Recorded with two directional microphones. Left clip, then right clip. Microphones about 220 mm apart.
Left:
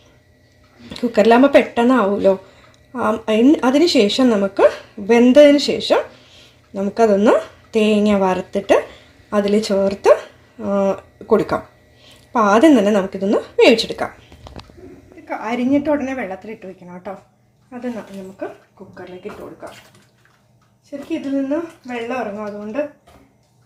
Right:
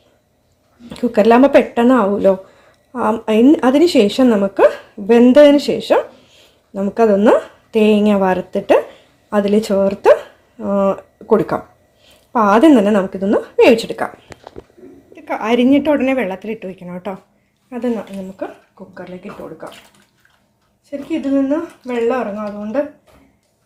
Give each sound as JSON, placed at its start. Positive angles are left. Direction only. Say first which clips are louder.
{"t": 0.9, "sound": "speech", "louder": "right 1 dB", "side_deg": -5}
{"t": 15.3, "sound": "a woman's voice", "louder": "right 6 dB", "side_deg": -35}
{"t": 21.1, "sound": "a woman's voice", "louder": "right 4 dB", "side_deg": -40}